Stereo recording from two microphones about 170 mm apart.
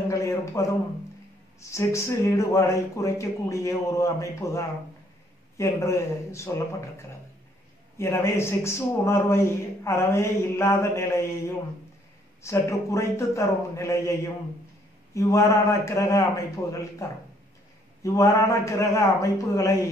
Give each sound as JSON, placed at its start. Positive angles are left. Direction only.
{"t": 0.1, "sound": "a man's voice", "side_deg": 15}
{"t": 8.0, "sound": "a man's voice", "side_deg": 15}
{"t": 15.1, "sound": "a man's voice", "side_deg": 15}
{"t": 18.0, "sound": "a man's voice", "side_deg": 20}